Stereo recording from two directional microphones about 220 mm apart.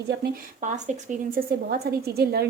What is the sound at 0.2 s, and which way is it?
A woman's voice, 40° right (ahead or behind).